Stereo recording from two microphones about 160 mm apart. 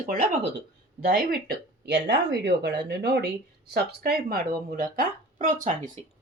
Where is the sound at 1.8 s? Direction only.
90° right; by 5.9 s 55° right (ahead or behind).